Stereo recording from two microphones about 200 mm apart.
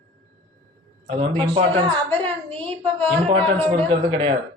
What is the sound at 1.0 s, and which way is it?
Speech, 30° right (ahead or behind).